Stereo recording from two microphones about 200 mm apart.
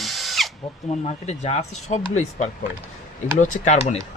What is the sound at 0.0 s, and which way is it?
Drill, centre (ahead or behind).